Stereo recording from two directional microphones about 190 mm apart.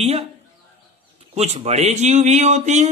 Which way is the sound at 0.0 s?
35° right (ahead or behind).